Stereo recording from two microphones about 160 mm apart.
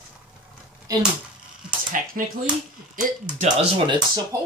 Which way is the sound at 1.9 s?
55° right (ahead or behind).